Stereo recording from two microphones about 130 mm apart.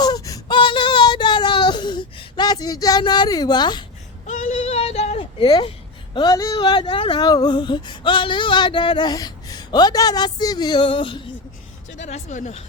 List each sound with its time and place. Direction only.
0.0 s whimper: 30° left (ahead or behind)
3.0 s speech: 35° left (ahead or behind)
4.3 s bleat: 70° left (ahead or behind); by 5.5 s 50° left (ahead or behind)
5.5 s speech: 35° left (ahead or behind)
11.9 s speech: 65° left (ahead or behind)